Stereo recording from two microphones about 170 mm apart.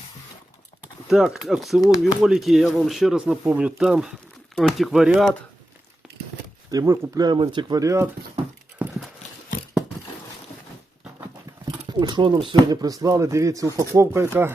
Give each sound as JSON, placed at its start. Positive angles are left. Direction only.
{"t": 1.0, "sound": "speech", "side_deg": 0}
{"t": 1.8, "sound": "speech", "side_deg": 20}
{"t": 2.2, "sound": "speech", "side_deg": 0}
{"t": 6.7, "sound": "speech", "side_deg": -20}
{"t": 11.9, "sound": "speech", "side_deg": -25}